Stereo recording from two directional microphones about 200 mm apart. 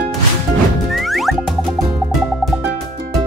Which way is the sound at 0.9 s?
Centre (ahead or behind).